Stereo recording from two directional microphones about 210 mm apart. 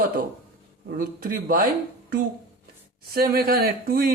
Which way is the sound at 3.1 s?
45° right (ahead or behind).